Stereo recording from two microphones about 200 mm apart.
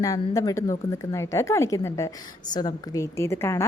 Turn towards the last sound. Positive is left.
turn(degrees=15)  # may be behind; listen again after turning